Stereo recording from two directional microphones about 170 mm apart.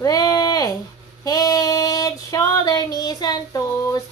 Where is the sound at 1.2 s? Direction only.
20° left (ahead or behind).